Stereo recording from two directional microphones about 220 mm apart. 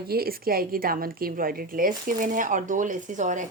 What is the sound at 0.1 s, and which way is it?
A woman's voice, 45° right (ahead or behind).